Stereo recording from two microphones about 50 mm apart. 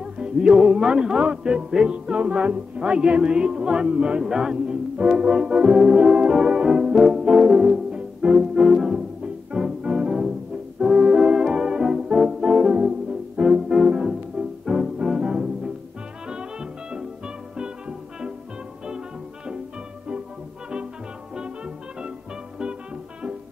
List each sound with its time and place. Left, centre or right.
0.0 s music: centre
11.5 s organ: centre
13.4 s brass instrument: centre
14.7 s music: centre
21.4 s music: centre